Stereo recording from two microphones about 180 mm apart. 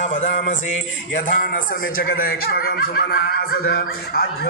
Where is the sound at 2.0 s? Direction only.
55° left (ahead or behind).